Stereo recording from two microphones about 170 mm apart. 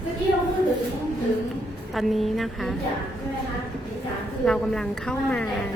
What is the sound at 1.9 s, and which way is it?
Speech, centre (ahead or behind).